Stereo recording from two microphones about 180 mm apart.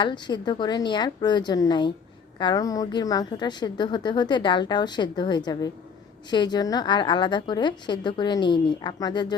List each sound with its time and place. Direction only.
0.0 s a woman's voice: 25° left (ahead or behind)